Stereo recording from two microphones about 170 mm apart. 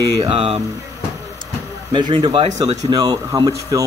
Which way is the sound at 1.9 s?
30° right (ahead or behind).